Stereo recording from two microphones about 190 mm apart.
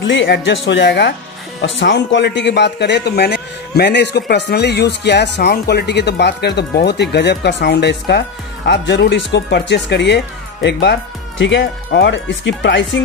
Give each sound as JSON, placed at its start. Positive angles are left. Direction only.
{"t": 0.0, "sound": "speech", "side_deg": 70}